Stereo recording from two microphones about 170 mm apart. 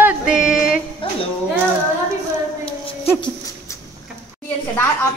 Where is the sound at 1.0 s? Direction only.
30° left (ahead or behind).